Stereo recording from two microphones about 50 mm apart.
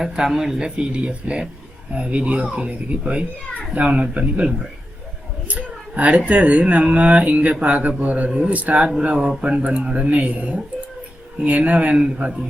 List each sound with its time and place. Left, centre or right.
0.0 s speech: centre
5.5 s a man's voice: right